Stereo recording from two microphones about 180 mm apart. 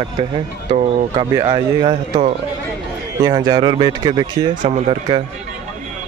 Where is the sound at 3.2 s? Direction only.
20° right (ahead or behind).